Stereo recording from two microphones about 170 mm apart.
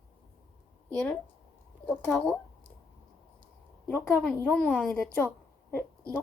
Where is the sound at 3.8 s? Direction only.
5° left (ahead or behind).